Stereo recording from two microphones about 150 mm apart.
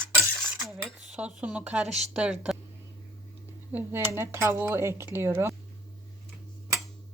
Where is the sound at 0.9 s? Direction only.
5° right (ahead or behind).